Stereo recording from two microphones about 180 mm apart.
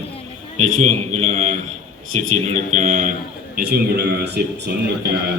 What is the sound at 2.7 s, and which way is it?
Speech, 45° right (ahead or behind).